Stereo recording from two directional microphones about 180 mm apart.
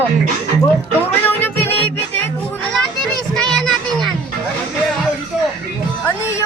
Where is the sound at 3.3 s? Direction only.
5° left (ahead or behind).